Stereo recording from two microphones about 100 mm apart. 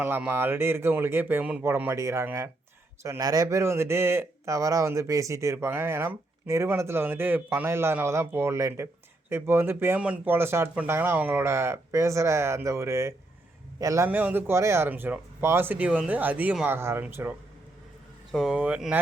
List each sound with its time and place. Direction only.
0.3 s a man's voice: 20° right (ahead or behind)
1.8 s a man's voice: 25° right (ahead or behind)
14.1 s a man's voice: 15° right (ahead or behind)
18.3 s speech: 5° right (ahead or behind)